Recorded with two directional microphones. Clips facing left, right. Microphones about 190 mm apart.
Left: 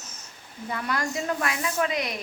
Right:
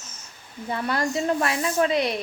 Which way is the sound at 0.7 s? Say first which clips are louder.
Right 4 dB; 30° right (ahead or behind).